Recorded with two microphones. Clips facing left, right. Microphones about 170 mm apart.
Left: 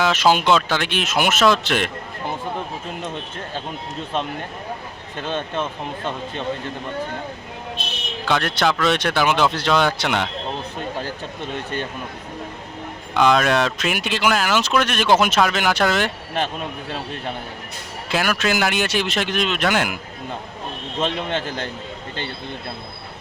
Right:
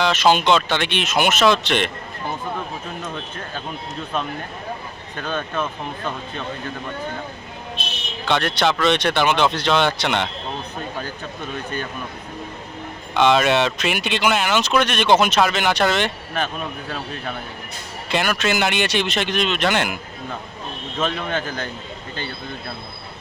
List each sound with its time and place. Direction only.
0.0 s speech: 5° left (ahead or behind)
5.2 s speech: 25° left (ahead or behind)
8.2 s speech: centre (ahead or behind)
11.5 s speech: 25° left (ahead or behind)
13.1 s speech: centre (ahead or behind)
18.1 s speech: 5° left (ahead or behind)
21.0 s speech: 25° left (ahead or behind)